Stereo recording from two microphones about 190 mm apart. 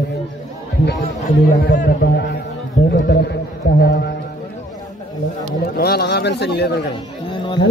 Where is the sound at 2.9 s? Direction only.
60° left (ahead or behind).